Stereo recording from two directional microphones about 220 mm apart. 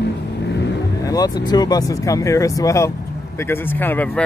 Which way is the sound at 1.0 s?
15° left (ahead or behind).